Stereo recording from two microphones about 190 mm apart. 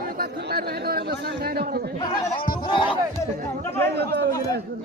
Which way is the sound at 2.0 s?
20° left (ahead or behind).